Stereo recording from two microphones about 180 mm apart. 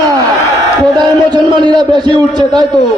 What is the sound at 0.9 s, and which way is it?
A man's voice, 25° right (ahead or behind).